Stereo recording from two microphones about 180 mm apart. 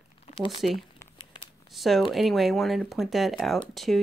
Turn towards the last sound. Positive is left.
turn(degrees=0)  # may be behind; listen again after turning